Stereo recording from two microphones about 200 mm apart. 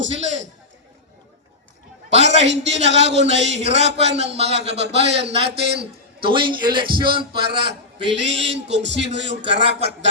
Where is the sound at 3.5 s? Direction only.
35° right (ahead or behind).